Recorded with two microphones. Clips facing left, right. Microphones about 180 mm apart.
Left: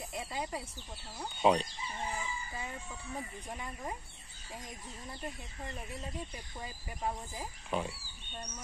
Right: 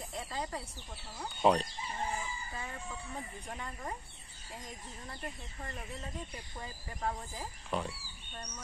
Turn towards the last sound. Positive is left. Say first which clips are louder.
# left 1 dB
turn(degrees=10)  # may be behind; listen again after turning